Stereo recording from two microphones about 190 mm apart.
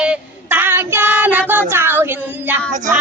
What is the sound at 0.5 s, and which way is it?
Child singing, 10° right (ahead or behind).